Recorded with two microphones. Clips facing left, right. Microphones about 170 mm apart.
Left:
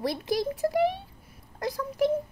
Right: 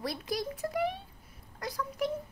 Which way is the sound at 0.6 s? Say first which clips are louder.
Left 9 dB; 40° left (ahead or behind).